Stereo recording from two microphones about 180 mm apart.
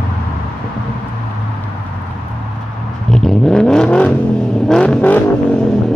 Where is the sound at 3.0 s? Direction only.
5° left (ahead or behind).